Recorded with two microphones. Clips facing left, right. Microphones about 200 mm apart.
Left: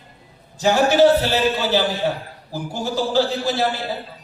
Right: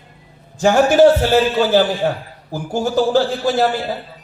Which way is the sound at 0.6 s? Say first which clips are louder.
Right 4 dB; 50° right (ahead or behind).